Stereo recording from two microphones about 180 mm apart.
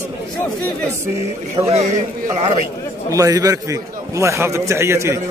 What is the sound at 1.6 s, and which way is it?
Speech, 35° right (ahead or behind).